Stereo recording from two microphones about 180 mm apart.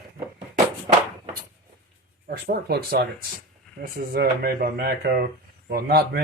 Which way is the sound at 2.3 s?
60° right (ahead or behind).